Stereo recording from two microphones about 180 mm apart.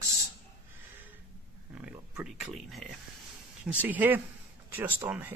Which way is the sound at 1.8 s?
5° right (ahead or behind).